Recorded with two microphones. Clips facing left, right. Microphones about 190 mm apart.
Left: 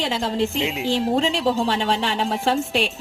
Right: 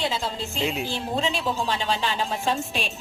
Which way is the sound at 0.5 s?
20° left (ahead or behind).